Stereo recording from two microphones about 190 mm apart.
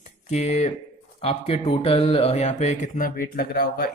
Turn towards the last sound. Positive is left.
turn(degrees=55)  # may be behind; listen again after turning